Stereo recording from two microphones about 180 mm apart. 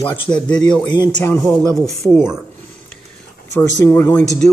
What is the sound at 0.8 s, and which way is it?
Speech, 25° left (ahead or behind).